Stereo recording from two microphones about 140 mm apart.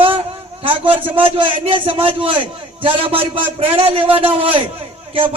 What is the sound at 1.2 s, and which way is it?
A man's voice, 40° right (ahead or behind).